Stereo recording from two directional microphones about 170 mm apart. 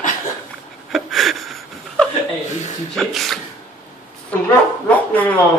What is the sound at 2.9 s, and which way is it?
Speech, centre (ahead or behind).